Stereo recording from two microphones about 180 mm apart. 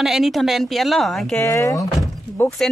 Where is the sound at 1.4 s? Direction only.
15° left (ahead or behind).